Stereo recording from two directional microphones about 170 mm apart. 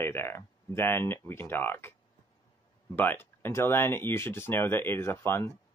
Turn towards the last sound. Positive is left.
turn(degrees=15)  # may be behind; listen again after turning